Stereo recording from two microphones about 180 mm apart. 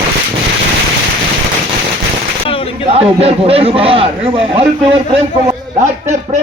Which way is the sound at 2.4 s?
30° left (ahead or behind).